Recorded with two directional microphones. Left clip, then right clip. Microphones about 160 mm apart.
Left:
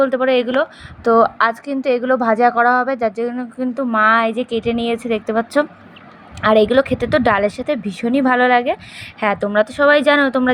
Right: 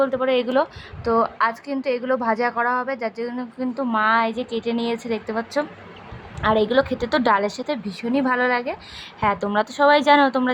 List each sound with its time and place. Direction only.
0.0 s a woman's voice: 15° left (ahead or behind)
1.0 s a woman's voice: 25° left (ahead or behind)